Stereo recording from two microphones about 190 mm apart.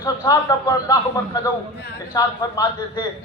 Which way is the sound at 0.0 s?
20° left (ahead or behind).